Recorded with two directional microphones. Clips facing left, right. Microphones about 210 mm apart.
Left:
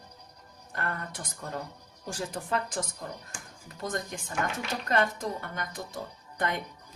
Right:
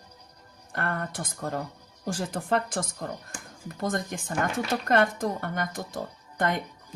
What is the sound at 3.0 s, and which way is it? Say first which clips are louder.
A woman's voice: right 5 dB; 60° right (ahead or behind).